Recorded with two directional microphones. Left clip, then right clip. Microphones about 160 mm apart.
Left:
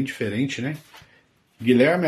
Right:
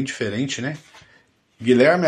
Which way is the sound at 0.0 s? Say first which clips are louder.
Right 1 dB; 5° left (ahead or behind).